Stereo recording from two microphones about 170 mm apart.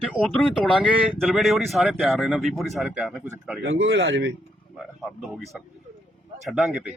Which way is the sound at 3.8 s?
90° right.